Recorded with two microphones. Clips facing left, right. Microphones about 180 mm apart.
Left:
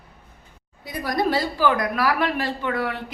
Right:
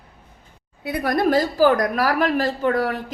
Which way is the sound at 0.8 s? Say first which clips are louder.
Right 4 dB; 60° right (ahead or behind).